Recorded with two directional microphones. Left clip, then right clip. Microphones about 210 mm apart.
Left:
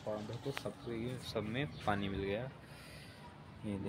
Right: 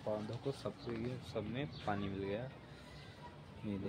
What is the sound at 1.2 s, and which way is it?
Speech, 30° left (ahead or behind).